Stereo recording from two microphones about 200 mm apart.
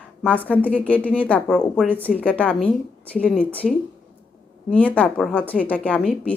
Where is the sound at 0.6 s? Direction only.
5° left (ahead or behind).